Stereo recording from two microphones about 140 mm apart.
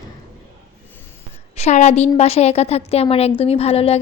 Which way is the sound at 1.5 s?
55° left (ahead or behind).